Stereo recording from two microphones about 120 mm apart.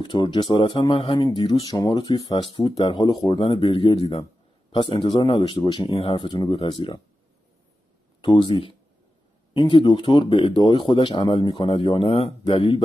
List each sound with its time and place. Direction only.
0.0 s speech: 40° left (ahead or behind)
2.8 s speech: 50° left (ahead or behind)
8.2 s speech: 45° left (ahead or behind)